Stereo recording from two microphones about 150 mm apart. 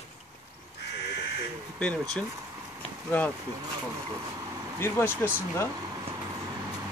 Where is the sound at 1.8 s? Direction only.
5° left (ahead or behind).